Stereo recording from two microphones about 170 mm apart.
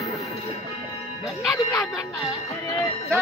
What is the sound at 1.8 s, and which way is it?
Speech, centre (ahead or behind).